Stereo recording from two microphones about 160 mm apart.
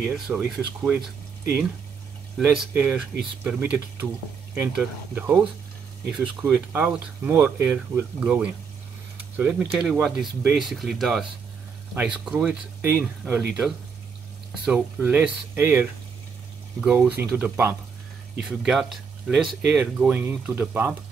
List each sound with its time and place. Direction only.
0.1 s speech: 5° right (ahead or behind)
2.3 s speech: centre (ahead or behind)
18.4 s speech: centre (ahead or behind)